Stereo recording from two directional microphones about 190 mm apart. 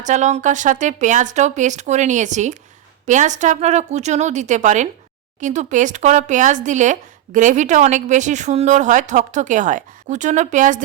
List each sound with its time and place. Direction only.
0.0 s speech: 40° right (ahead or behind)